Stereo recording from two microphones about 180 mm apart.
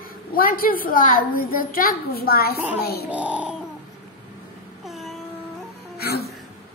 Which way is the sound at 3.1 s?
10° right (ahead or behind).